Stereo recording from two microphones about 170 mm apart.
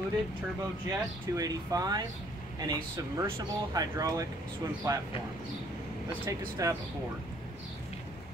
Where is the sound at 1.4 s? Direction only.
20° right (ahead or behind).